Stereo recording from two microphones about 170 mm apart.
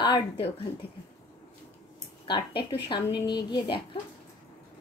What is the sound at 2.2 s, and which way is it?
A woman's voice, 30° left (ahead or behind).